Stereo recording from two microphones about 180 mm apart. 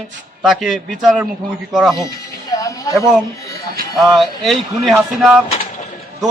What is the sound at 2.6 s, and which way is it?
Speech, 20° left (ahead or behind).